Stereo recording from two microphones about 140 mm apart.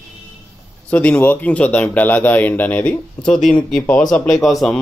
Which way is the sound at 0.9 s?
10° left (ahead or behind).